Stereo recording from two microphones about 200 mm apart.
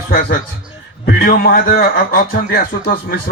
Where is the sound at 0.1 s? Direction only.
45° left (ahead or behind).